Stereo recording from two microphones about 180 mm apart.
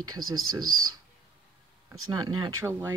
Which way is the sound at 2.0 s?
20° right (ahead or behind).